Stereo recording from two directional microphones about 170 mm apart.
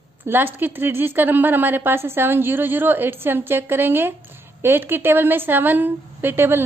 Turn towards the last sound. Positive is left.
turn(degrees=-15)  # may be behind; listen again after turning